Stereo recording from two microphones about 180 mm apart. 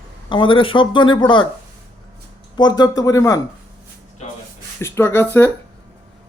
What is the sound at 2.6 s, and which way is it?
Speech, 25° left (ahead or behind).